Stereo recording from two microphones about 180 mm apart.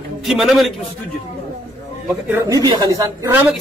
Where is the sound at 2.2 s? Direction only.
15° right (ahead or behind).